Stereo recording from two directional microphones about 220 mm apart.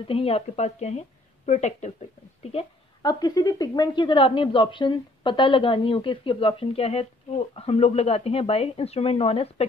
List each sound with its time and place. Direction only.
0.1 s speech: 25° left (ahead or behind)
2.5 s a woman's voice: 20° left (ahead or behind)